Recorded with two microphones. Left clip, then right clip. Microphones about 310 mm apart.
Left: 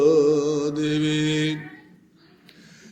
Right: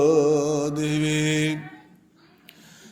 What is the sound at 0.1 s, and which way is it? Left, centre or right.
Mantra, right.